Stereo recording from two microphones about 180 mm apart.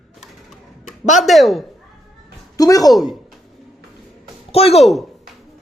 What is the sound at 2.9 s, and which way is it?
Speech, centre (ahead or behind).